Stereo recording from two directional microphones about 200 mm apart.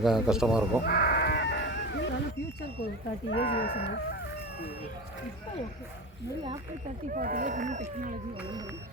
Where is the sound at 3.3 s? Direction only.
50° left (ahead or behind).